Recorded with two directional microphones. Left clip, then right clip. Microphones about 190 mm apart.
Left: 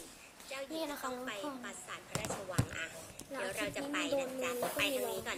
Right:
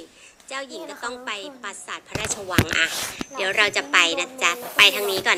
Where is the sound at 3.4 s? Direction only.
45° right (ahead or behind).